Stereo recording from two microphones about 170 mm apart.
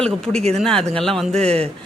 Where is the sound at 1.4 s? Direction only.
35° right (ahead or behind).